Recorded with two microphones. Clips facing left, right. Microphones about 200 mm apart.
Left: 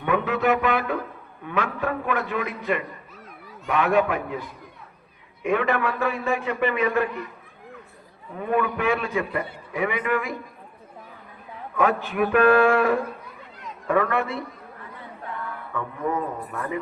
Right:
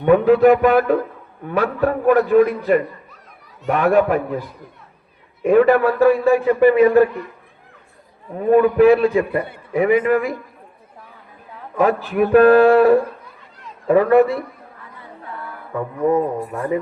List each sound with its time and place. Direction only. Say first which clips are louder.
0.0 s a man's voice: right 11 dB; 35° right (ahead or behind)
8.4 s a man's voice: right 12 dB; 35° right (ahead or behind)
11.8 s a man's voice: right 6 dB; 35° right (ahead or behind)
15.7 s a man's voice: right 10 dB; 35° right (ahead or behind)